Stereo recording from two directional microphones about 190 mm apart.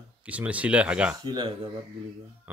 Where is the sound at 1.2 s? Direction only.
25° right (ahead or behind).